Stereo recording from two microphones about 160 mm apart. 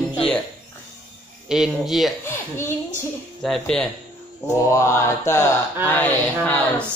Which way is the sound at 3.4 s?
5° left (ahead or behind).